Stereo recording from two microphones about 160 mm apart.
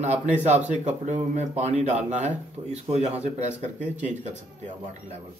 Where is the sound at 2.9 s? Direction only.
45° right (ahead or behind).